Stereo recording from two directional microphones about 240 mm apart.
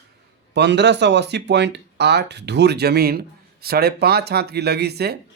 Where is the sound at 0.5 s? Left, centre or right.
Right.